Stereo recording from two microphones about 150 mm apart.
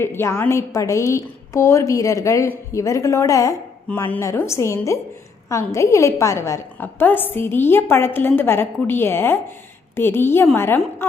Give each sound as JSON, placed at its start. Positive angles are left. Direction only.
{"t": 0.0, "sound": "a woman's voice", "side_deg": 15}